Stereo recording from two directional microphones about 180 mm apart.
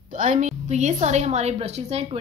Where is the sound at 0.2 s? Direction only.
40° right (ahead or behind).